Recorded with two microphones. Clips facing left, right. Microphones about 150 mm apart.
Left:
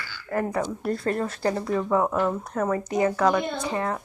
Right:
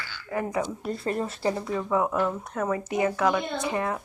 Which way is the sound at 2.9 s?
35° left (ahead or behind).